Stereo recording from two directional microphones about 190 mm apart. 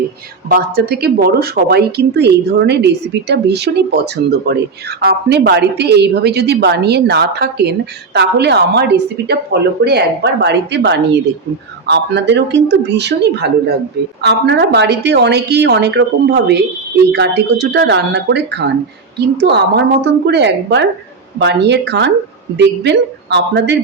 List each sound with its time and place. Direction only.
0.4 s a woman's voice: 55° right (ahead or behind)